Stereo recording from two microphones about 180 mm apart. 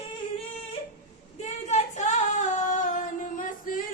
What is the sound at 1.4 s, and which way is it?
Female singing, 40° left (ahead or behind).